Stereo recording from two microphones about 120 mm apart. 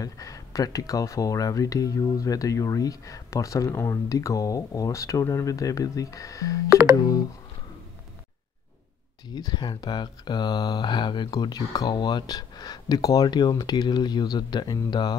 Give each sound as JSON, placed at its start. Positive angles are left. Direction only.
{"t": 0.0, "sound": "speech", "side_deg": 25}
{"t": 9.3, "sound": "speech", "side_deg": 35}